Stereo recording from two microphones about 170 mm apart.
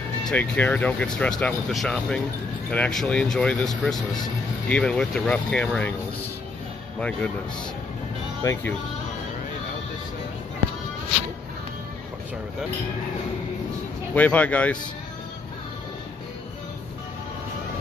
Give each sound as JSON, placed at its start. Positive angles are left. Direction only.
{"t": 0.3, "sound": "speech", "side_deg": 10}
{"t": 7.0, "sound": "speech", "side_deg": 5}
{"t": 8.4, "sound": "speech", "side_deg": 20}
{"t": 14.1, "sound": "speech", "side_deg": 10}